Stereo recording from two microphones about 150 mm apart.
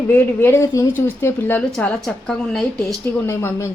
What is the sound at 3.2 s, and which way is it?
Speech, 20° left (ahead or behind).